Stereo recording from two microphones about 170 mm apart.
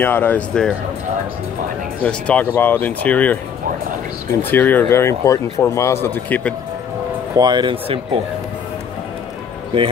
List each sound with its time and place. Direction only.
0.0 s speech: 10° left (ahead or behind)
2.0 s speech: 5° left (ahead or behind)
4.5 s speech: 10° left (ahead or behind)
7.3 s speech: 25° right (ahead or behind)